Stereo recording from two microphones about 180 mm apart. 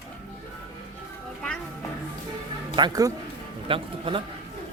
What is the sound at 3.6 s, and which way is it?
Speech, 30° right (ahead or behind).